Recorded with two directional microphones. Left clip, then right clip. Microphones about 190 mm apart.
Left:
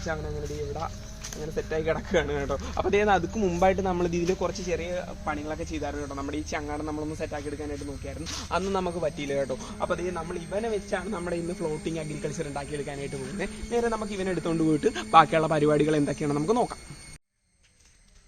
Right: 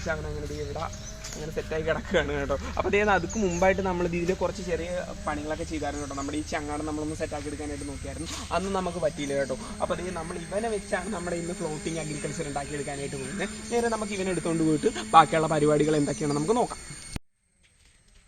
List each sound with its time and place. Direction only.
1.5 s speech: 40° left (ahead or behind)
5.2 s speech: 20° left (ahead or behind)
8.4 s speech: 20° left (ahead or behind)
13.4 s speech: 15° left (ahead or behind)